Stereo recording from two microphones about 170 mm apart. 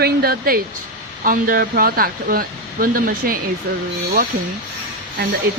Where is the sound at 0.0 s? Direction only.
65° right (ahead or behind).